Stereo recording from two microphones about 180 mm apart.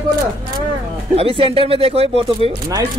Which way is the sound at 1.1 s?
30° right (ahead or behind).